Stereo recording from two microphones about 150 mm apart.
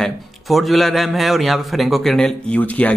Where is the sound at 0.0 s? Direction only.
Centre (ahead or behind).